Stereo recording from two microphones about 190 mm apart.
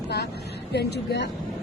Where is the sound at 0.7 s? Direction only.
60° left (ahead or behind).